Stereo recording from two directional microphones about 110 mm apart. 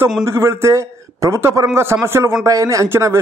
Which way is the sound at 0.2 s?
25° right (ahead or behind).